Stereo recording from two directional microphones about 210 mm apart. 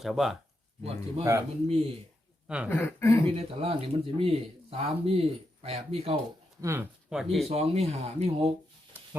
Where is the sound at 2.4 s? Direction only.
5° right (ahead or behind).